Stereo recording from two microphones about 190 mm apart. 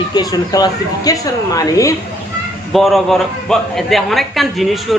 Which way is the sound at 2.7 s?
Centre (ahead or behind).